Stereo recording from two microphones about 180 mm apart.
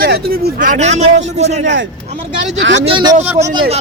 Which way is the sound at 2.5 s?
90° right.